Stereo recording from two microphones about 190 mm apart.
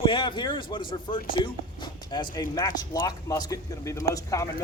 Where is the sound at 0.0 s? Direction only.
25° left (ahead or behind).